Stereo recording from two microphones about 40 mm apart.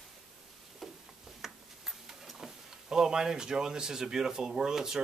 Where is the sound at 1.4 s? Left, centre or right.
Centre.